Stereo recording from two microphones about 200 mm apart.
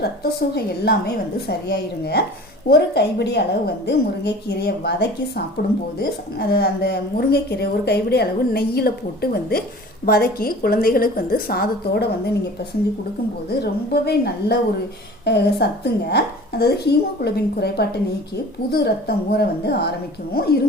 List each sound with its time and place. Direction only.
0.0 s a woman's voice: 55° left (ahead or behind)
13.6 s a woman's voice: 55° left (ahead or behind)